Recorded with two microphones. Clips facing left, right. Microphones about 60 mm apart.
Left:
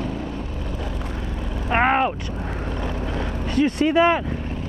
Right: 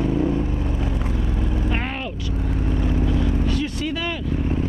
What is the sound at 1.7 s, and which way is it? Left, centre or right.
Vehicle, left.